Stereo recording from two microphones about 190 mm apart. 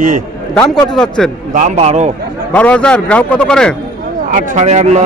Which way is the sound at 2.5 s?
5° left (ahead or behind).